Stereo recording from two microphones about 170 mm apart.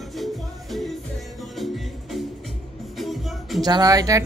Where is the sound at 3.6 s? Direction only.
20° right (ahead or behind).